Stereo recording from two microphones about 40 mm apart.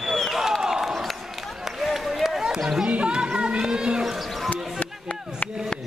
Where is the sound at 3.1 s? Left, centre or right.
Right.